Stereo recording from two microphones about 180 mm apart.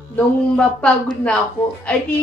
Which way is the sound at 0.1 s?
5° left (ahead or behind).